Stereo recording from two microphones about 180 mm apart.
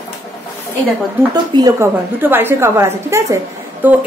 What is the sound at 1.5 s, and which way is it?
A woman's voice, 20° right (ahead or behind).